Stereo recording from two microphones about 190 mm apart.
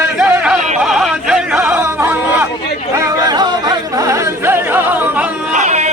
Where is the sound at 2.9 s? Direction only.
15° right (ahead or behind).